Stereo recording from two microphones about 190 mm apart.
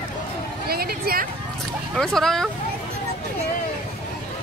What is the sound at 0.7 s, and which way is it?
Speech, 55° right (ahead or behind).